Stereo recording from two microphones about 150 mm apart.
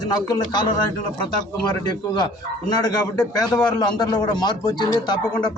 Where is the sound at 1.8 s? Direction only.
30° left (ahead or behind).